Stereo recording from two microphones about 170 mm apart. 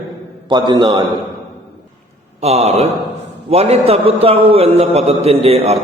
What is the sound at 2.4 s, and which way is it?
A man's voice, 40° right (ahead or behind).